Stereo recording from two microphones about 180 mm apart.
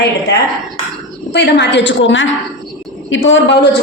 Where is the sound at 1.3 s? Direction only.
70° left (ahead or behind); by 3.6 s 90° left.